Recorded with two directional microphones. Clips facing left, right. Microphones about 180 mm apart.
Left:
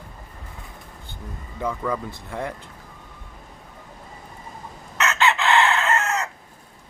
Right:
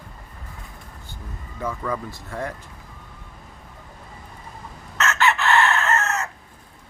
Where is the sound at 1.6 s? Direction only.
15° left (ahead or behind).